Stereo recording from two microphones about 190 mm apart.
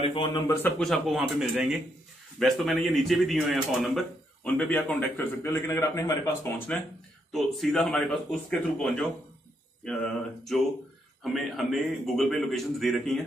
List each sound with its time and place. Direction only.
0.1 s speech: 25° left (ahead or behind)
0.6 s a man's voice: 5° left (ahead or behind)